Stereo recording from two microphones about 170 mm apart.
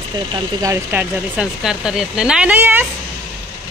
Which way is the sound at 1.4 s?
5° right (ahead or behind).